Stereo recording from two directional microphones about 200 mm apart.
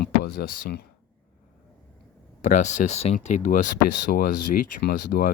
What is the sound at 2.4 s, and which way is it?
Speech, 35° left (ahead or behind).